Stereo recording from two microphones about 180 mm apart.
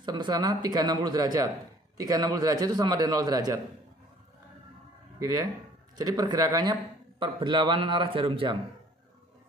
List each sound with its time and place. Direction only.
0.0 s a man's voice: 25° right (ahead or behind)
5.2 s a man's voice: 20° right (ahead or behind)